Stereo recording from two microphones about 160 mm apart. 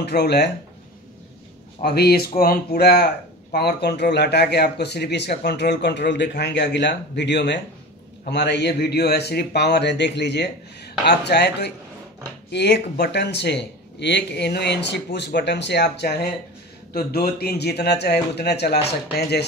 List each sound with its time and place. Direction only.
0.0 s a man's voice: 90° left
1.8 s a man's voice: 85° left
16.9 s a man's voice: 75° left (ahead or behind)